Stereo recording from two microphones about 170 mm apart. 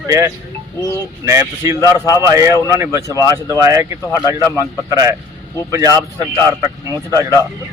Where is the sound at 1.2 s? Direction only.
15° right (ahead or behind).